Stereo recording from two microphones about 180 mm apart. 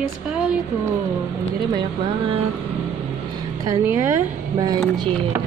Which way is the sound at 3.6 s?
15° right (ahead or behind).